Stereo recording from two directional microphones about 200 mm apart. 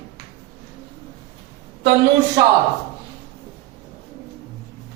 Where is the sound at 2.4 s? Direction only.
15° right (ahead or behind).